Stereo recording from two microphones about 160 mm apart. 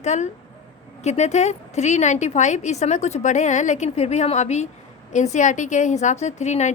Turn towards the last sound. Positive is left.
turn(degrees=45)  # may be behind; listen again after turning